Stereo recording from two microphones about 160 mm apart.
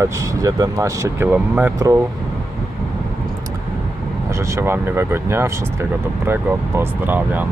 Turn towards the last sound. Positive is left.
turn(degrees=-15)  # may be behind; listen again after turning